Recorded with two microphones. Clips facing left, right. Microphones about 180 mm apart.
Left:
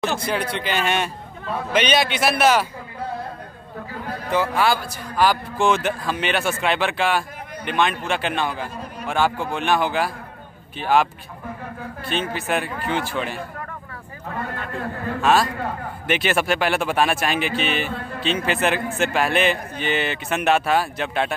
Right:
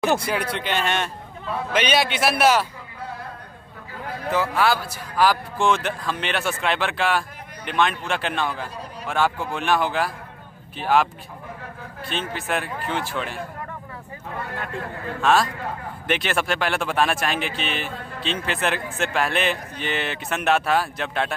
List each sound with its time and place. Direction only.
0.3 s a man's voice: 5° right (ahead or behind)
4.3 s a man's voice: centre (ahead or behind)
12.1 s a man's voice: centre (ahead or behind)
16.1 s a man's voice: 5° left (ahead or behind)